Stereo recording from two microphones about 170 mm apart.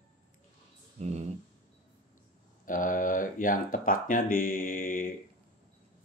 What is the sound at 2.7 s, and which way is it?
Speech, 50° left (ahead or behind).